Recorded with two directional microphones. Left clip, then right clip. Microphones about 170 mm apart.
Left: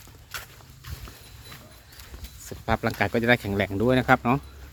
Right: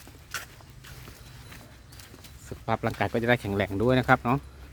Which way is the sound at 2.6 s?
5° left (ahead or behind).